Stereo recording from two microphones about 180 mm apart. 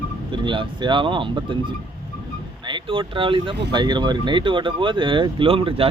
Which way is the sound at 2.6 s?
25° right (ahead or behind).